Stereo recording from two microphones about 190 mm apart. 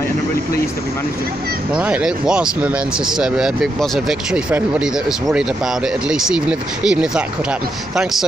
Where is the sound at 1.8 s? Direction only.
5° right (ahead or behind).